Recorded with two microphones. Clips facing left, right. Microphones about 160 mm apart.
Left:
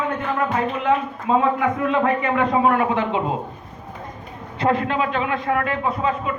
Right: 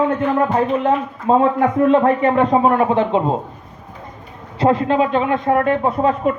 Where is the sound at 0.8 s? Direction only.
45° right (ahead or behind).